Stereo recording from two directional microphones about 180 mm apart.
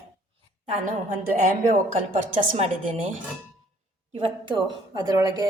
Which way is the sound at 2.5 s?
35° right (ahead or behind).